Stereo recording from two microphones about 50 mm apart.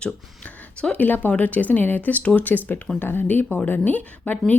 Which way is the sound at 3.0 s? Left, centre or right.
Left.